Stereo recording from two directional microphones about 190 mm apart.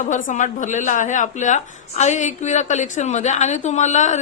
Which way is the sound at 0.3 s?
40° left (ahead or behind).